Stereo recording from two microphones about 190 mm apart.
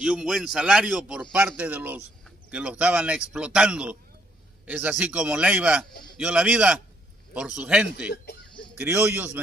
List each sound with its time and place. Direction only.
0.0 s speech: centre (ahead or behind)